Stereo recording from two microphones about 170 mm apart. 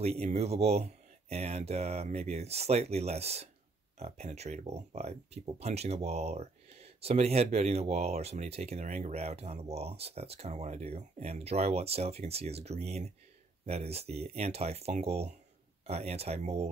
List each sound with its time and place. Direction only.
0.0 s speech: 40° right (ahead or behind)